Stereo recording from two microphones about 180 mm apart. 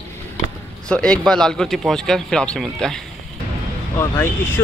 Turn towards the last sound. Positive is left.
turn(degrees=10)  # may be behind; listen again after turning